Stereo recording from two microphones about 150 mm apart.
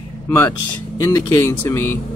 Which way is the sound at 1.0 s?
20° left (ahead or behind).